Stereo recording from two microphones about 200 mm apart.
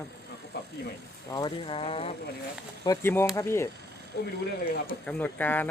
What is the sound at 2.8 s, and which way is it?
Speech, 15° left (ahead or behind).